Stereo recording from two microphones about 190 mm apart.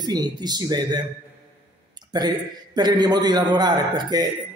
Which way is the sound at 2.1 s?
20° right (ahead or behind).